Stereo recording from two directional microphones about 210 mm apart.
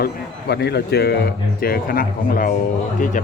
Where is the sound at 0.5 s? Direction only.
50° left (ahead or behind).